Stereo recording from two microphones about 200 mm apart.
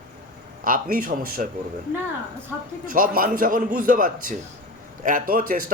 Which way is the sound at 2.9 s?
45° right (ahead or behind).